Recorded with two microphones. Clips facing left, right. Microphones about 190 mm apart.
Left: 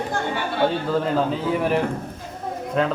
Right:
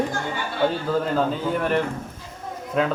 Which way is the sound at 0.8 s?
Centre (ahead or behind).